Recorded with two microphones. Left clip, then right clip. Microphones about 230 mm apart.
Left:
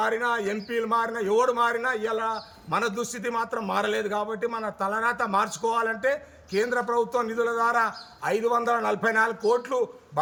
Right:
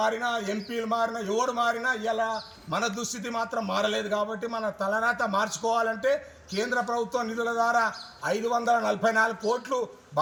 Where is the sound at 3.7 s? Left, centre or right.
Centre.